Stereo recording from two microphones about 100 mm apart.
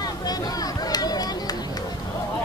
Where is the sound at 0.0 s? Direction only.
40° left (ahead or behind).